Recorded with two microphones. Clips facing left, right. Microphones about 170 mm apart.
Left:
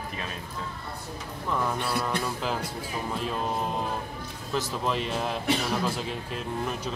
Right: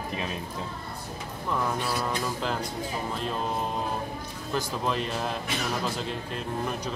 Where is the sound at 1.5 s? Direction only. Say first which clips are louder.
Even; centre (ahead or behind).